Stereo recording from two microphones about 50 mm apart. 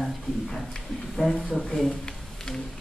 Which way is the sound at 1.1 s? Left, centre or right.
Centre.